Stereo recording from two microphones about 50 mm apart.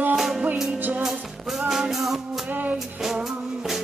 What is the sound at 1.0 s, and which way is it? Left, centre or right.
Music, centre.